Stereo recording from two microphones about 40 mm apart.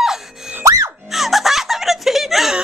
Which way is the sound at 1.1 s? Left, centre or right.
Centre.